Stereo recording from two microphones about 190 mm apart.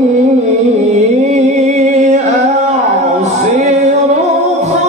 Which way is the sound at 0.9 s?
40° right (ahead or behind).